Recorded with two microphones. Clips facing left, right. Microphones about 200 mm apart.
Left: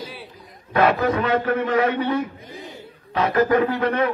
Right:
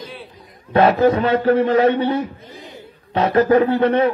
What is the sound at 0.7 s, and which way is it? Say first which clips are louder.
A man's voice: right 5 dB; 35° right (ahead or behind).